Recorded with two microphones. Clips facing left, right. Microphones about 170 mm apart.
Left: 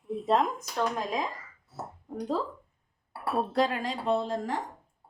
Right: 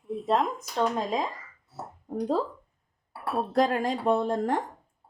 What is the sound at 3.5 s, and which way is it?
Speech, 45° right (ahead or behind).